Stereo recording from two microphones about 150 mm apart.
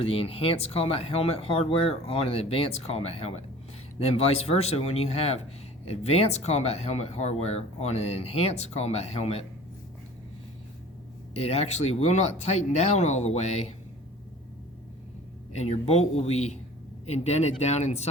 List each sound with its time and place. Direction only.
0.0 s speech: 40° left (ahead or behind)
11.3 s speech: 45° left (ahead or behind)
15.5 s speech: 45° left (ahead or behind)